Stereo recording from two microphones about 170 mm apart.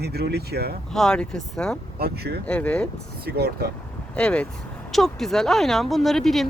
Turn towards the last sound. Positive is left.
turn(degrees=0)  # may be behind; listen again after turning